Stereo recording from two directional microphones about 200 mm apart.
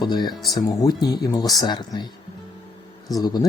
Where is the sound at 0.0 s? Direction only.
20° left (ahead or behind).